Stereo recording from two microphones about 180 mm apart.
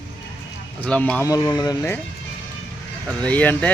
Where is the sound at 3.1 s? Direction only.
5° left (ahead or behind).